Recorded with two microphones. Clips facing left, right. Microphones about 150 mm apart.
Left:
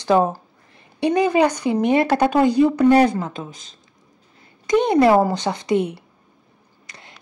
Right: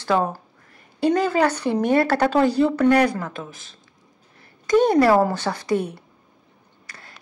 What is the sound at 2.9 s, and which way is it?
Speech, 25° left (ahead or behind).